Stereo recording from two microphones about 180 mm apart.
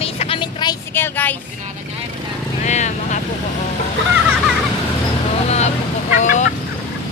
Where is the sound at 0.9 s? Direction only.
10° left (ahead or behind).